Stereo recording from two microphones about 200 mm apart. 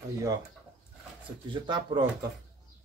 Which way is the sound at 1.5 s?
25° right (ahead or behind).